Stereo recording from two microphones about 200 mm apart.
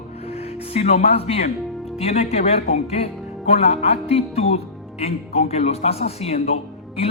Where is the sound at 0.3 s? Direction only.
30° left (ahead or behind).